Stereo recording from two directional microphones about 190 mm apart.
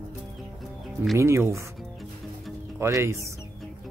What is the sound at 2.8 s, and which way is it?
Speech, 15° right (ahead or behind).